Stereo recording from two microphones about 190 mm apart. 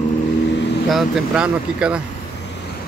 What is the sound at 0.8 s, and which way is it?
Speech, 5° right (ahead or behind).